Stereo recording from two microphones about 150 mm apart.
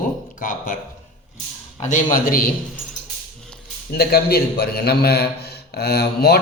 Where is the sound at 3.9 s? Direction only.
90° left.